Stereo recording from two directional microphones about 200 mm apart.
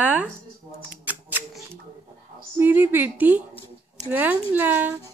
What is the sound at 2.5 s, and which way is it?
A woman's voice, 10° right (ahead or behind).